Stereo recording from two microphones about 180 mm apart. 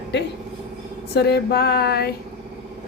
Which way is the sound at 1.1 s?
65° left (ahead or behind).